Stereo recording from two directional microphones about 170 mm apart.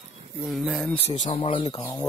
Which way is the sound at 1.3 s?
35° left (ahead or behind).